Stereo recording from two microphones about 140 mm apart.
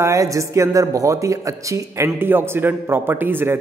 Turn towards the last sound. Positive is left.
turn(degrees=-15)  # may be behind; listen again after turning